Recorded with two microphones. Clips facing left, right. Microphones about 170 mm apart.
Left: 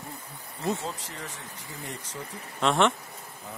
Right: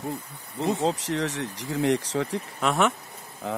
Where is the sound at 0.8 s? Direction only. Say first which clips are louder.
Right 12 dB; 80° right.